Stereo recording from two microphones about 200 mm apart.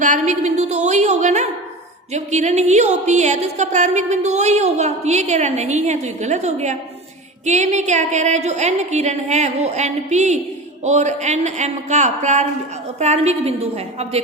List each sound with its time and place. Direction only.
0.0 s a woman's voice: 35° right (ahead or behind)